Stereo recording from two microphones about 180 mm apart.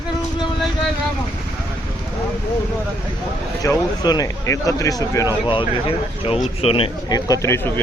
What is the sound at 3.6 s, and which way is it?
Speech, 20° left (ahead or behind).